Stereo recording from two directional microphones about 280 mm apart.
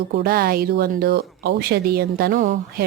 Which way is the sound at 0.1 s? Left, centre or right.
Right.